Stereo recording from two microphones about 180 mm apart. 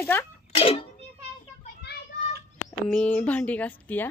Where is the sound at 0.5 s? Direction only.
30° left (ahead or behind).